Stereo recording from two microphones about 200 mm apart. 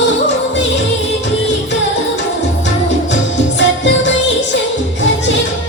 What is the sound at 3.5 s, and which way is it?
Music, 65° left (ahead or behind).